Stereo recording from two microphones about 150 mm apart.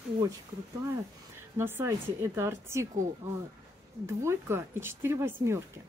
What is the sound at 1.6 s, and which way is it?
Speech, 15° right (ahead or behind).